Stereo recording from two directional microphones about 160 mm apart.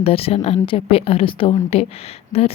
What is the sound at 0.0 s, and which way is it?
A woman's voice, 40° left (ahead or behind).